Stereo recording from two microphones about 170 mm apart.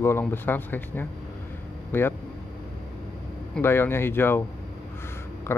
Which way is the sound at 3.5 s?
15° left (ahead or behind).